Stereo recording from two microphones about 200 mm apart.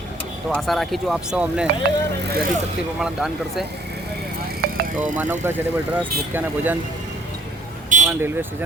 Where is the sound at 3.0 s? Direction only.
5° right (ahead or behind).